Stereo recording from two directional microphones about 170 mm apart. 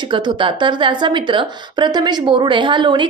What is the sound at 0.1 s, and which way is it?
Speech, 30° right (ahead or behind).